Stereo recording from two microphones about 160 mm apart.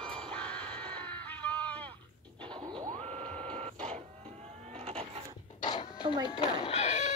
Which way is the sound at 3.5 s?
40° right (ahead or behind).